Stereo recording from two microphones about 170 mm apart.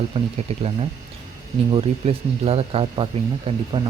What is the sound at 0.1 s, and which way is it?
Speech, 30° right (ahead or behind).